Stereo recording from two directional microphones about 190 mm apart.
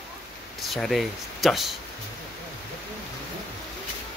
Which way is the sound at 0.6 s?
Centre (ahead or behind).